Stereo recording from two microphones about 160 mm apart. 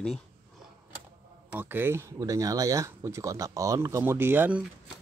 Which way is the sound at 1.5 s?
10° right (ahead or behind).